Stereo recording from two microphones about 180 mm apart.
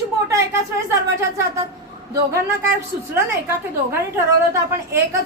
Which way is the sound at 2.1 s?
15° right (ahead or behind).